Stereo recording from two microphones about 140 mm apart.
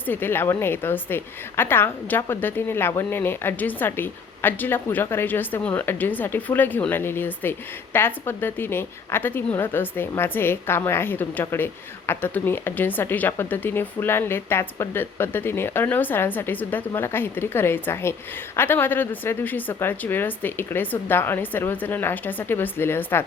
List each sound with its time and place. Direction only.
0.1 s a woman's voice: 15° left (ahead or behind)